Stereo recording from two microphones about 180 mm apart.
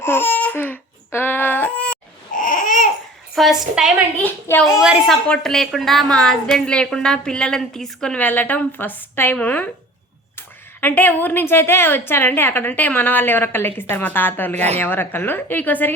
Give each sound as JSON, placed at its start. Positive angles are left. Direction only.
{"t": 0.0, "sound": "baby cry", "side_deg": 10}
{"t": 2.3, "sound": "babbling", "side_deg": 45}
{"t": 3.3, "sound": "a woman's voice", "side_deg": 0}
{"t": 4.2, "sound": "a woman's voice", "side_deg": 10}
{"t": 4.7, "sound": "a woman's voice", "side_deg": -5}